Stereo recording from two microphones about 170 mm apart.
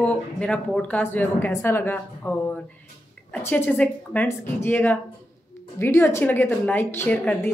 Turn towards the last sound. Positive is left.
turn(degrees=10)  # may be behind; listen again after turning